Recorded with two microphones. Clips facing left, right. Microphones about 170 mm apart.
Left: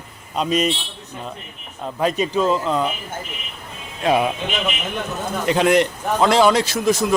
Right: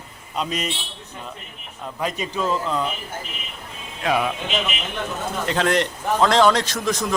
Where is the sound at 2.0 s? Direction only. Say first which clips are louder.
Left 6 dB; 25° left (ahead or behind).